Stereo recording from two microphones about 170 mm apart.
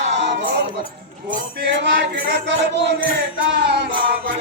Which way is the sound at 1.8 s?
90° right.